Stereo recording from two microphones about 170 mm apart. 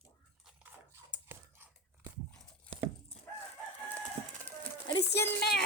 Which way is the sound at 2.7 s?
40° right (ahead or behind).